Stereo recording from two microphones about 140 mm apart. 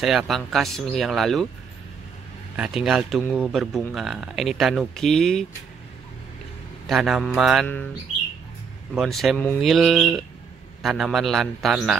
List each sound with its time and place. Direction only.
0.0 s speech: centre (ahead or behind)
2.5 s speech: 5° right (ahead or behind)
6.9 s speech: centre (ahead or behind)
8.9 s speech: centre (ahead or behind)